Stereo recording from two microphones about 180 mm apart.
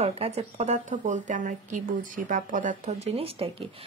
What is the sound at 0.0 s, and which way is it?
Speech, 35° right (ahead or behind).